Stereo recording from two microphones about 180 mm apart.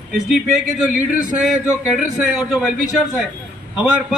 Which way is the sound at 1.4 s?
5° right (ahead or behind).